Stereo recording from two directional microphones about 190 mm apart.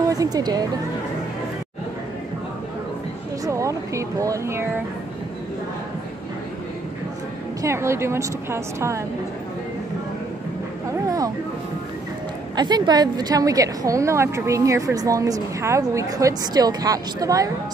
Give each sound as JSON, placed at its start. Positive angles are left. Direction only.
{"t": 0.1, "sound": "a woman's voice", "side_deg": -20}
{"t": 3.4, "sound": "speech", "side_deg": -15}
{"t": 7.6, "sound": "a woman's voice", "side_deg": -15}
{"t": 11.1, "sound": "a sound", "side_deg": -20}
{"t": 12.5, "sound": "a woman's voice", "side_deg": -20}